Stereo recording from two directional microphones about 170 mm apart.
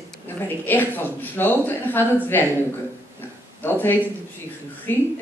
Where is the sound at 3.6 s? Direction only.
10° left (ahead or behind).